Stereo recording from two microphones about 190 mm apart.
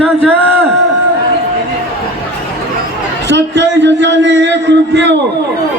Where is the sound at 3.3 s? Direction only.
65° right (ahead or behind).